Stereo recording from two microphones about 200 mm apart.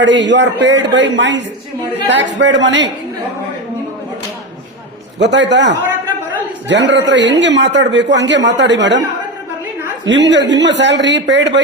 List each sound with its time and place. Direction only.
0.0 s a man's voice: 65° right (ahead or behind)
5.2 s a man's voice: 60° right (ahead or behind)
10.1 s a man's voice: 60° right (ahead or behind)